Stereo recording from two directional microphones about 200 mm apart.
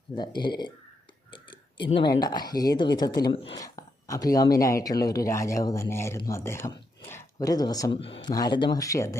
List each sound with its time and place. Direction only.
0.2 s speech: 20° left (ahead or behind)